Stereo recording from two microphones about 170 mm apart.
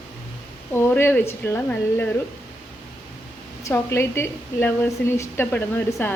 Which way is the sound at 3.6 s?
15° left (ahead or behind).